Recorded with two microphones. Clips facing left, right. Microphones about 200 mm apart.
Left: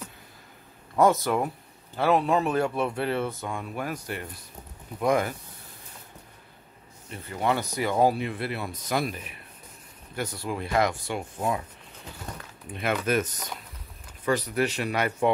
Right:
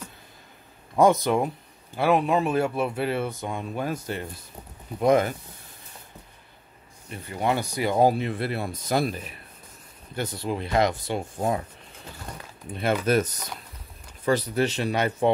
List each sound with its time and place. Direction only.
0.9 s speech: 15° right (ahead or behind)
7.2 s speech: 15° right (ahead or behind)
8.0 s speech: 30° right (ahead or behind)
8.3 s speech: 40° right (ahead or behind)
10.1 s speech: 25° right (ahead or behind)
12.7 s speech: 35° right (ahead or behind)